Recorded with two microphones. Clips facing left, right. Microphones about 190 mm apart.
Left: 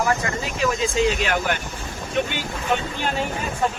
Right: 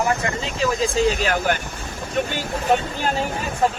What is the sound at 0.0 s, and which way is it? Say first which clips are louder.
Speech: right 1 dB; 20° right (ahead or behind).